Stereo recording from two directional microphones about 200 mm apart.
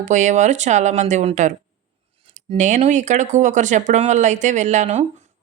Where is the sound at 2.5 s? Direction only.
35° right (ahead or behind).